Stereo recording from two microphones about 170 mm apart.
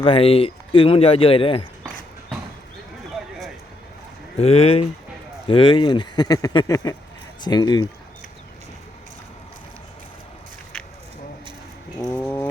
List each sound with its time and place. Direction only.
0.0 s speech: 35° left (ahead or behind)
4.4 s speech: 35° left (ahead or behind)
12.1 s a sound: 10° left (ahead or behind)